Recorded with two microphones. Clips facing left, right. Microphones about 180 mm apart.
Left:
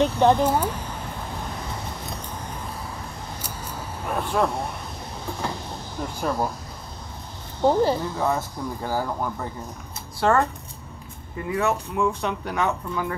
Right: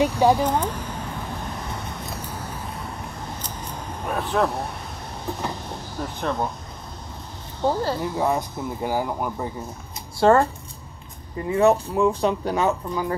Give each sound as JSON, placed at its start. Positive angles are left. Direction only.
{"t": 0.2, "sound": "speech", "side_deg": -10}
{"t": 0.5, "sound": "a sound", "side_deg": 10}
{"t": 2.0, "sound": "a sound", "side_deg": -10}
{"t": 3.3, "sound": "vehicle", "side_deg": 10}
{"t": 4.2, "sound": "speech", "side_deg": 0}
{"t": 6.2, "sound": "speech", "side_deg": 5}
{"t": 7.6, "sound": "speech", "side_deg": 15}
{"t": 8.0, "sound": "speech", "side_deg": -15}
{"t": 10.2, "sound": "speech", "side_deg": -30}